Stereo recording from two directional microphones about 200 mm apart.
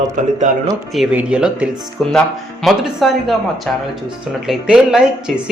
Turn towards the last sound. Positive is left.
turn(degrees=-5)  # may be behind; listen again after turning